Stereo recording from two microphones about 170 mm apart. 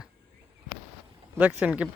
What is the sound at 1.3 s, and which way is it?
Speech, 10° right (ahead or behind).